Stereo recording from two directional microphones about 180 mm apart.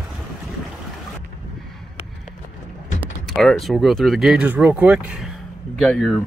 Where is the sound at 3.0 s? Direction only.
Centre (ahead or behind).